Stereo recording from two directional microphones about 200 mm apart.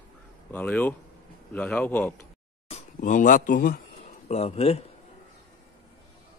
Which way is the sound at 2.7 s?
35° left (ahead or behind).